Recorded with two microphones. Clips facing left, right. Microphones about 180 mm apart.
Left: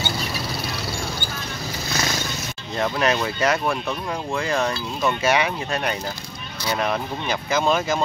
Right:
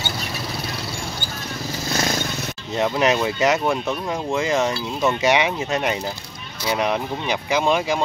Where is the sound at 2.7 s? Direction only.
15° right (ahead or behind).